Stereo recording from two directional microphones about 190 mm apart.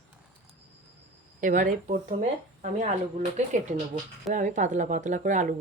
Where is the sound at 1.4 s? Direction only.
45° right (ahead or behind).